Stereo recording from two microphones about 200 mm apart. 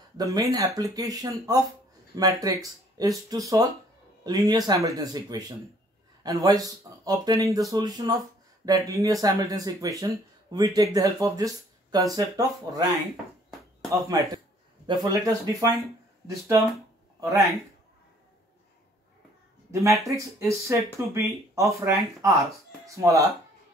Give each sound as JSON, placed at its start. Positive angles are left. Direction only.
{"t": 0.2, "sound": "speech", "side_deg": -15}
{"t": 13.8, "sound": "speech", "side_deg": -15}
{"t": 17.2, "sound": "speech", "side_deg": -15}
{"t": 19.7, "sound": "speech", "side_deg": -15}